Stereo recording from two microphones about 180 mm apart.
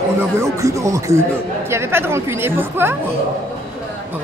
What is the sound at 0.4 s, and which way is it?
A man's voice, 15° right (ahead or behind).